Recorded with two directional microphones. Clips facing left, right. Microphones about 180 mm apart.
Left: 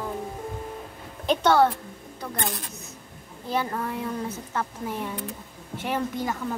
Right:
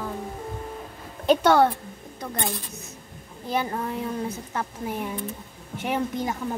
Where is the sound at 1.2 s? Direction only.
10° right (ahead or behind).